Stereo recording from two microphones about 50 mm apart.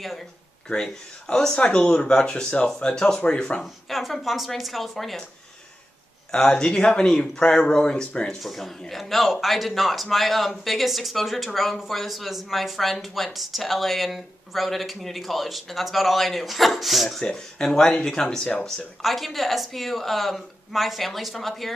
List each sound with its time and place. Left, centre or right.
1.2 s speech: centre
3.6 s speech: centre
6.3 s speech: centre
8.4 s speech: centre
17.2 s speech: centre
19.0 s speech: centre